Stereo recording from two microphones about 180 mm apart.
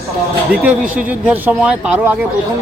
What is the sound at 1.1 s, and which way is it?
Speech, 10° right (ahead or behind).